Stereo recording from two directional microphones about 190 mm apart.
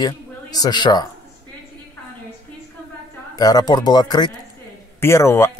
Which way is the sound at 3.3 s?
20° left (ahead or behind).